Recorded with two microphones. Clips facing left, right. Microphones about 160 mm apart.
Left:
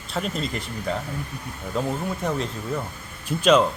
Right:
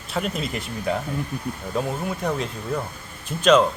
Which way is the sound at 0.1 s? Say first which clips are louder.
Right 1 dB; 5° right (ahead or behind).